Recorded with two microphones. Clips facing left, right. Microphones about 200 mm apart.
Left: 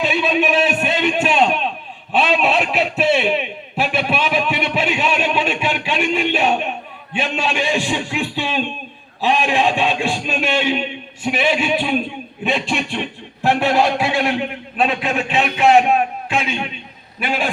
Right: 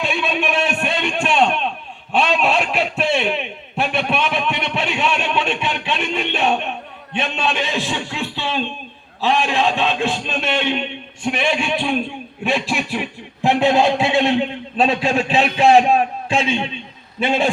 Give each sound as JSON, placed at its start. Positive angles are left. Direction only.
{"t": 0.0, "sound": "a sound", "side_deg": 5}
{"t": 9.2, "sound": "a man's voice", "side_deg": 15}
{"t": 13.4, "sound": "a man's voice", "side_deg": -20}